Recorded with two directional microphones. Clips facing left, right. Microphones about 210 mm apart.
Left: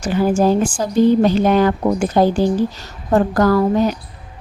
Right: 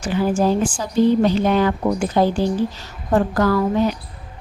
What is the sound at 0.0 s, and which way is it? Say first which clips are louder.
A woman's voice: left 3 dB; 45° left (ahead or behind).